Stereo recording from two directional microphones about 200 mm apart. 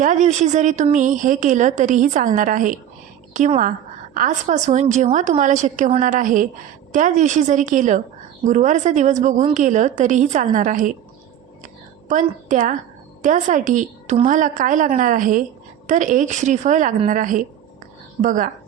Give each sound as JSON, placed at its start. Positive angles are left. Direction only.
{"t": 0.0, "sound": "a woman's voice", "side_deg": -35}
{"t": 12.5, "sound": "a woman's voice", "side_deg": -40}